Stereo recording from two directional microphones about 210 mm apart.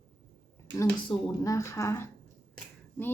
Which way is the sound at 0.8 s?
15° left (ahead or behind).